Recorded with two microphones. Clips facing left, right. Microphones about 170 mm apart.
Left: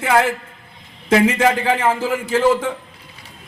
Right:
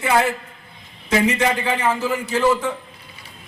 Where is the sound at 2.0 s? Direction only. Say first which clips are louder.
Left 2 dB; 90° left.